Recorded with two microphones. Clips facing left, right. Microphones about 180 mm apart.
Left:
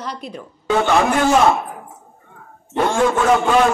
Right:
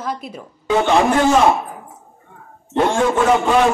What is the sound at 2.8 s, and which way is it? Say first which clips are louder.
Speech: even; 15° right (ahead or behind).